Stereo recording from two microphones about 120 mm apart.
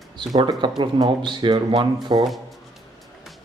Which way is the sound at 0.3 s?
35° right (ahead or behind).